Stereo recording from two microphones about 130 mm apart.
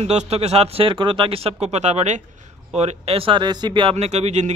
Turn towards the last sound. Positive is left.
turn(degrees=-60)  # may be behind; listen again after turning